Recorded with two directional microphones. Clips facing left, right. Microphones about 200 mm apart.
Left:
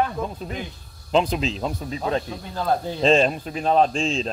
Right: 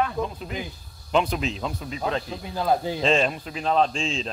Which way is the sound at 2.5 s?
5° right (ahead or behind).